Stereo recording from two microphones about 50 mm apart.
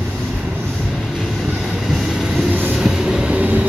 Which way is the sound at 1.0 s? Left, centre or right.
Centre.